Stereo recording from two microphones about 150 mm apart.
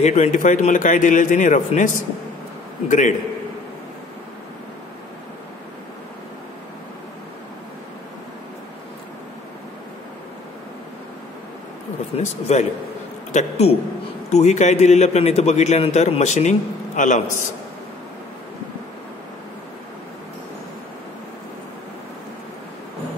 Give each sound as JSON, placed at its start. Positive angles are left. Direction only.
{"t": 0.0, "sound": "a man's voice", "side_deg": 50}
{"t": 2.9, "sound": "a man's voice", "side_deg": 60}
{"t": 12.2, "sound": "a man's voice", "side_deg": 50}